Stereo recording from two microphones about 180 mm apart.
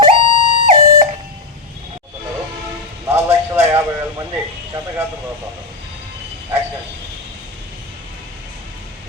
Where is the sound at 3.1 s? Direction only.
15° right (ahead or behind).